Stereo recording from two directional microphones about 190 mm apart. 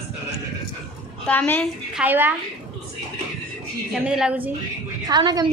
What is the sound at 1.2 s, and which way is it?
Speech, 5° left (ahead or behind).